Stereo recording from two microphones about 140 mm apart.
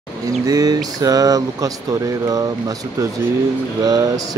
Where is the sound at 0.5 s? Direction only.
25° right (ahead or behind).